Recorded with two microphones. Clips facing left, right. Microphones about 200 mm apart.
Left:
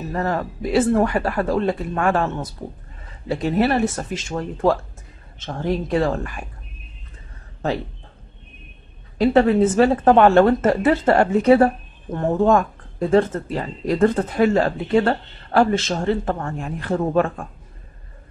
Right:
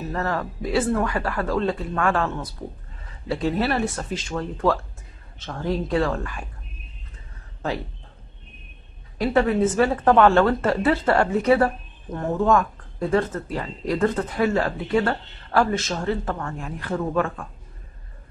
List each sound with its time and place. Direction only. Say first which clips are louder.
0.1 s speech: left 4 dB; 20° left (ahead or behind)
9.2 s speech: left 5 dB; 25° left (ahead or behind)